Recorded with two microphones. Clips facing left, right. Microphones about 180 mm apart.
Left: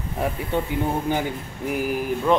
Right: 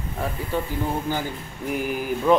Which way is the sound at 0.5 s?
25° left (ahead or behind).